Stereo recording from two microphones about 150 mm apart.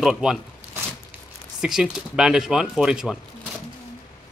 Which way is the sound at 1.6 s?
5° right (ahead or behind).